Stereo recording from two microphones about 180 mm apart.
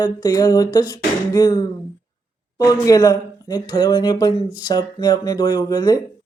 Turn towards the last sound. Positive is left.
turn(degrees=20)  # may be behind; listen again after turning